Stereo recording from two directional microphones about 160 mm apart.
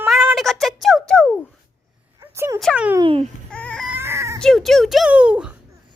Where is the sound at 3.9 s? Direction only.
15° right (ahead or behind).